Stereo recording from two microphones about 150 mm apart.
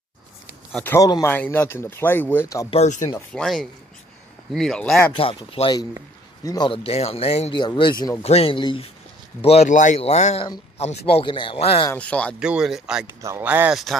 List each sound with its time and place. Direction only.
0.7 s speech: 15° left (ahead or behind)
1.0 s speech: 25° left (ahead or behind)
1.3 s speech: 15° left (ahead or behind)
2.7 s speech: 50° left (ahead or behind)
3.3 s speech: centre (ahead or behind)
5.1 s speech: 35° left (ahead or behind)
6.4 s speech: 25° left (ahead or behind)
6.7 s speech: 40° left (ahead or behind)
7.5 s speech: 30° left (ahead or behind)
8.2 s speech: 40° left (ahead or behind)
11.9 s speech: 10° left (ahead or behind)
12.4 s speech: 5° right (ahead or behind)